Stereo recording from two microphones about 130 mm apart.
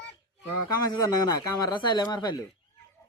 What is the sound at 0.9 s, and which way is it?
Speech, 30° left (ahead or behind).